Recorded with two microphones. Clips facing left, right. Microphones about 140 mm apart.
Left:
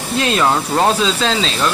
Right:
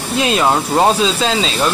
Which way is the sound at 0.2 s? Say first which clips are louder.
Right 1 dB; 15° right (ahead or behind).